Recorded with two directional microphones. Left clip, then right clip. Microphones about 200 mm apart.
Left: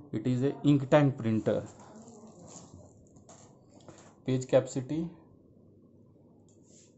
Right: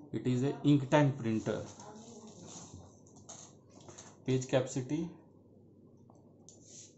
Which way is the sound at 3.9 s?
50° left (ahead or behind).